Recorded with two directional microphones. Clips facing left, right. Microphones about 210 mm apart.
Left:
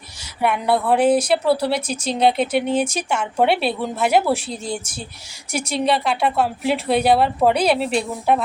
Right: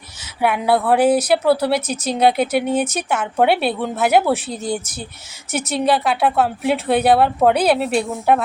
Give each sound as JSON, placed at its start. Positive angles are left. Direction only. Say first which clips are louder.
{"t": 0.4, "sound": "speech", "louder": "right 2 dB", "side_deg": -5}